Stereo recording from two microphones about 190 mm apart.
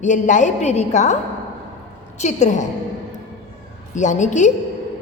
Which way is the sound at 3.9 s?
40° left (ahead or behind).